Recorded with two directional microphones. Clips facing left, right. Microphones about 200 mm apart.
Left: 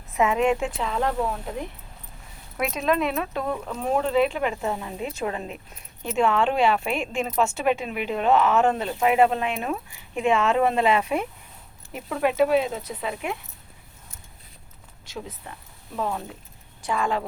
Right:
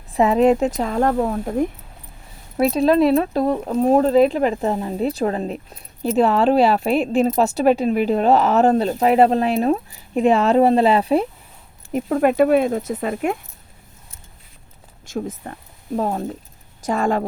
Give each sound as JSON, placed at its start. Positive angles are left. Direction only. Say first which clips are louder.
{"t": 0.1, "sound": "speech", "louder": "right 7 dB", "side_deg": -35}
{"t": 2.6, "sound": "speech", "louder": "right 9 dB", "side_deg": -35}
{"t": 15.0, "sound": "speech", "louder": "right 10 dB", "side_deg": -50}